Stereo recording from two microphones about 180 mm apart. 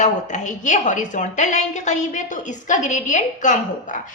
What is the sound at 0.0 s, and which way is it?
A woman's voice, 40° left (ahead or behind).